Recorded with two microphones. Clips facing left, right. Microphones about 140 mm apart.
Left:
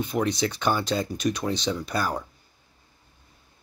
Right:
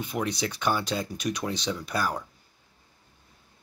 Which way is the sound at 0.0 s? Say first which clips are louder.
Left 4 dB; 10° right (ahead or behind).